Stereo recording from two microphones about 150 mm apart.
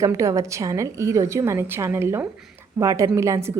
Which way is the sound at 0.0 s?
20° right (ahead or behind).